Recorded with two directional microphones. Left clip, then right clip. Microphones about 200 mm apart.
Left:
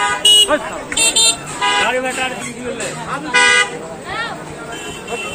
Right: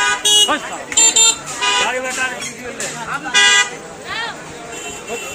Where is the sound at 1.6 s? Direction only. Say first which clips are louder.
Left 2 dB; 65° right (ahead or behind).